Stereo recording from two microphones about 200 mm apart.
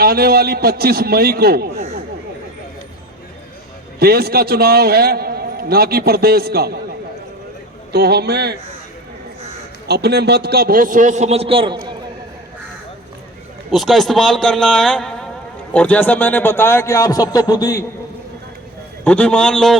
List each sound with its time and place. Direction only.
0.0 s a man's voice: 50° right (ahead or behind)
4.0 s a man's voice: 50° right (ahead or behind)
7.9 s a man's voice: 55° right (ahead or behind)
9.8 s a man's voice: 55° right (ahead or behind); by 11.9 s 20° right (ahead or behind)
13.7 s a man's voice: centre (ahead or behind); by 17.8 s 15° left (ahead or behind)
19.0 s a man's voice: 5° left (ahead or behind)